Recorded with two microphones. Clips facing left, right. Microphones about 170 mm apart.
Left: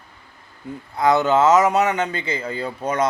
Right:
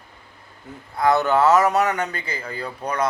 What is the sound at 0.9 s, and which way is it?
A man's voice, 20° left (ahead or behind).